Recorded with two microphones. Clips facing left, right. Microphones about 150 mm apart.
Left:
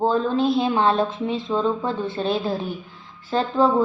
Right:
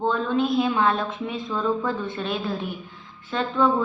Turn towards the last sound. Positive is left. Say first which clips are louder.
# left 3 dB
turn(degrees=30)  # may be behind; listen again after turning